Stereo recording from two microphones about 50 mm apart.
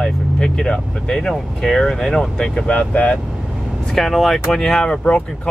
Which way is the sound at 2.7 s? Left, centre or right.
Left.